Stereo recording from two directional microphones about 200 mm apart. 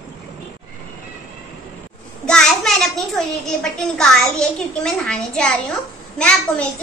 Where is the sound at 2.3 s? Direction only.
5° left (ahead or behind).